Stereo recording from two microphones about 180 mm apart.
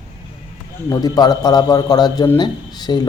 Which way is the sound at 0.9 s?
20° left (ahead or behind).